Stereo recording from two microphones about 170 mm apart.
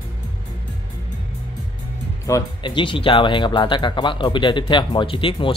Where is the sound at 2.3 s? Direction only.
25° left (ahead or behind).